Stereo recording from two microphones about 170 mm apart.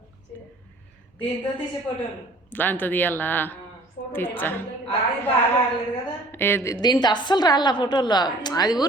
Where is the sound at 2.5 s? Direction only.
10° left (ahead or behind).